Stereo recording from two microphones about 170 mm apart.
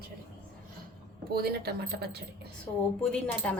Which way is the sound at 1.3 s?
65° right (ahead or behind).